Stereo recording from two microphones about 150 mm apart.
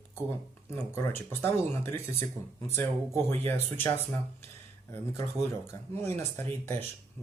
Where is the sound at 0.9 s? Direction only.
15° left (ahead or behind).